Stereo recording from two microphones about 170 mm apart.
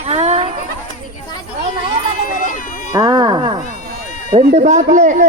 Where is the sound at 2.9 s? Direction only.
20° right (ahead or behind).